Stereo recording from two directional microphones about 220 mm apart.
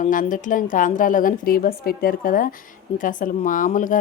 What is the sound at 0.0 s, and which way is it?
A woman's voice, 35° left (ahead or behind).